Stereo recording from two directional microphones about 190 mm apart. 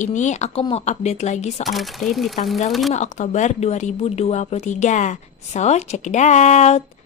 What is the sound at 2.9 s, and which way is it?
Speech, 40° left (ahead or behind).